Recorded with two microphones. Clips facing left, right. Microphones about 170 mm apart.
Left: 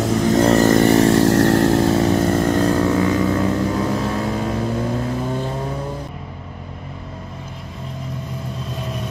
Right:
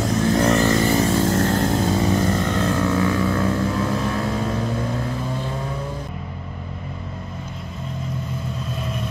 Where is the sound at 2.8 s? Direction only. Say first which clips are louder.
Left 3 dB; 20° left (ahead or behind).